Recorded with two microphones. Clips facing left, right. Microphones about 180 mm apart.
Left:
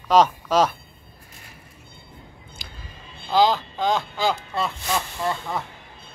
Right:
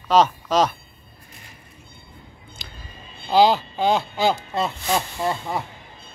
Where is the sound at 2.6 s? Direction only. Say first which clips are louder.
Right 1 dB; 10° left (ahead or behind).